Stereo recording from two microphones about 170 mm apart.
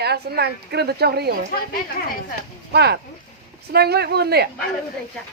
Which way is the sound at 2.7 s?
70° right (ahead or behind).